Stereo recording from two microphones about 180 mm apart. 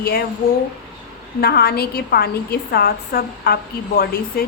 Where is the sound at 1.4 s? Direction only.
60° left (ahead or behind).